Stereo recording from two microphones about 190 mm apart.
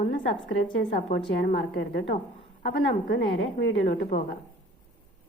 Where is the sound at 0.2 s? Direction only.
80° left.